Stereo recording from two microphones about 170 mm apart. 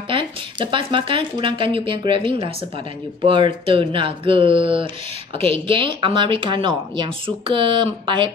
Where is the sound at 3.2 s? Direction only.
30° right (ahead or behind).